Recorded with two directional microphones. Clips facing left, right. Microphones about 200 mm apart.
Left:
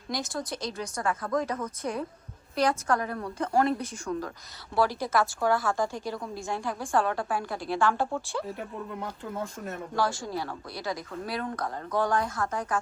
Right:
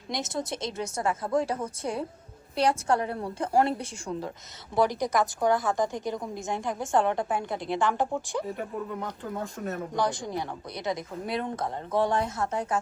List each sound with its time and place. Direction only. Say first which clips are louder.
0.1 s a woman's voice: right 1 dB; 20° right (ahead or behind)
8.4 s speech: right 3 dB; centre (ahead or behind)
9.9 s a woman's voice: left 1 dB; 20° right (ahead or behind)